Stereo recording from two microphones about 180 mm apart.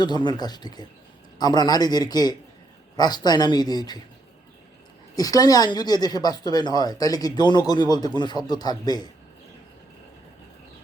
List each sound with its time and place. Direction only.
0.0 s a woman's voice: 25° left (ahead or behind)
5.1 s a woman's voice: 20° left (ahead or behind)